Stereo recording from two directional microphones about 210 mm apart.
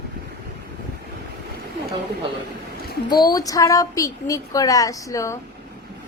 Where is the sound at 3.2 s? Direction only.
15° left (ahead or behind).